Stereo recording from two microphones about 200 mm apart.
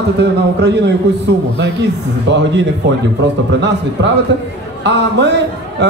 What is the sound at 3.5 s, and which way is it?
A man's voice, 60° right (ahead or behind).